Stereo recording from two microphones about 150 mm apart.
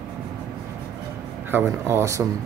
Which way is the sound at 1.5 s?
15° right (ahead or behind).